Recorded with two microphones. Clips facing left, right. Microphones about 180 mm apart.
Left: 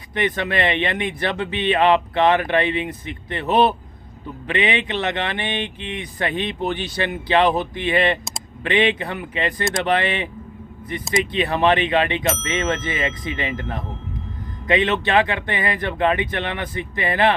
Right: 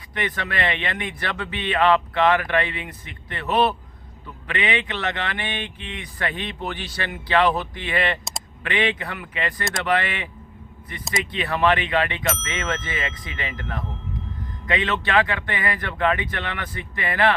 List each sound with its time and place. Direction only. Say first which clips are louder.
0.1 s speech: left 6 dB; 20° left (ahead or behind)